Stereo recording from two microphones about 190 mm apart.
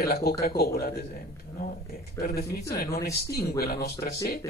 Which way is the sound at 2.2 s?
55° left (ahead or behind).